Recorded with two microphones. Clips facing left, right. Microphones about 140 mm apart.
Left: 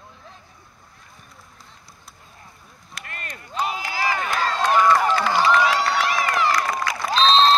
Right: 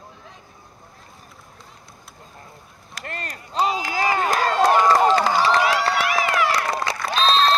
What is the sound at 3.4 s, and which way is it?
Run, 35° right (ahead or behind).